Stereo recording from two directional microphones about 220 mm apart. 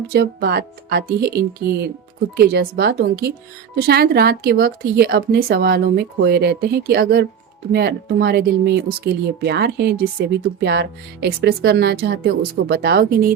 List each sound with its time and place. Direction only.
0.1 s speech: 45° right (ahead or behind)